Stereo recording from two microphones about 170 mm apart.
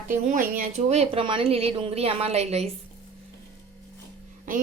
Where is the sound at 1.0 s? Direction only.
30° right (ahead or behind).